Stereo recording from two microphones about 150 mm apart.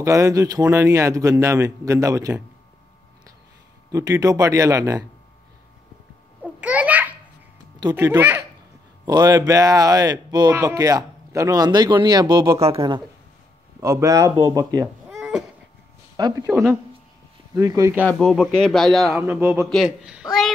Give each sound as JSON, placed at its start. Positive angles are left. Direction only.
{"t": 0.0, "sound": "a man's voice", "side_deg": -20}
{"t": 3.9, "sound": "a man's voice", "side_deg": -25}
{"t": 6.4, "sound": "babbling", "side_deg": -10}
{"t": 7.9, "sound": "a child's voice", "side_deg": -15}
{"t": 12.5, "sound": "speech", "side_deg": -40}
{"t": 13.7, "sound": "a man's voice", "side_deg": -20}
{"t": 15.0, "sound": "a sound", "side_deg": -5}
{"t": 16.2, "sound": "a man's voice", "side_deg": -25}
{"t": 17.6, "sound": "a man's voice", "side_deg": -20}
{"t": 18.0, "sound": "speech", "side_deg": 0}
{"t": 19.2, "sound": "a child's voice", "side_deg": -15}